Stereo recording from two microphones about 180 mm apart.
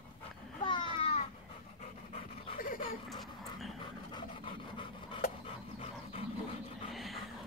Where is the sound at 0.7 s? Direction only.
30° left (ahead or behind).